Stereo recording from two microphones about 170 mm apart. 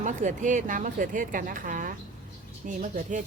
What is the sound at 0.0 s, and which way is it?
A woman's voice, 45° right (ahead or behind).